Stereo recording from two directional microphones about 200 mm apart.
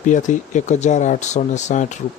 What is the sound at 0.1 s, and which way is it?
Speech, 40° left (ahead or behind).